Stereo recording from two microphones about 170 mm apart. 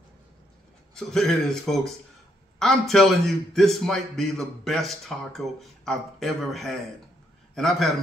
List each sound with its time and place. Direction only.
0.9 s a man's voice: 5° left (ahead or behind)